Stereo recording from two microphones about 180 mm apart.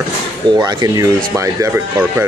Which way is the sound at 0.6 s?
20° right (ahead or behind).